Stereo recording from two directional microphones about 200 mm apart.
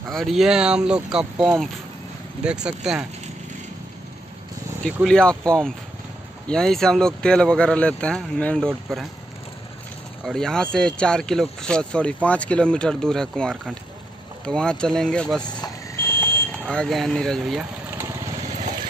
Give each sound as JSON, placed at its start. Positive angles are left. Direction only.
{"t": 0.1, "sound": "speech", "side_deg": 0}
{"t": 5.0, "sound": "speech", "side_deg": 5}
{"t": 10.2, "sound": "speech", "side_deg": 5}
{"t": 15.4, "sound": "speech", "side_deg": 20}
{"t": 16.5, "sound": "speech", "side_deg": 5}
{"t": 17.9, "sound": "lawn mower", "side_deg": -15}